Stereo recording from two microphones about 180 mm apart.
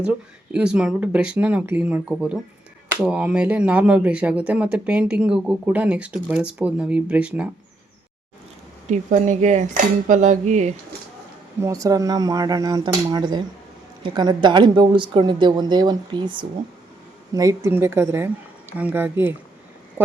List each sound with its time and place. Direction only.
0.0 s speech: 5° right (ahead or behind)
8.9 s cutlery: 40° right (ahead or behind)
11.6 s speech: 20° right (ahead or behind)